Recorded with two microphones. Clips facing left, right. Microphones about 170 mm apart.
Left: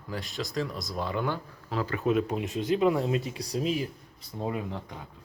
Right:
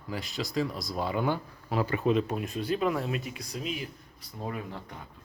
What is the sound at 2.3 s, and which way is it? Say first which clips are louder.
Speech: left 3 dB; 20° left (ahead or behind).